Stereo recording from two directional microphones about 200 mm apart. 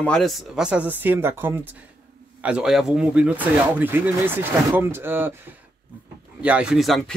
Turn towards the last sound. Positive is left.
turn(degrees=0)  # may be behind; listen again after turning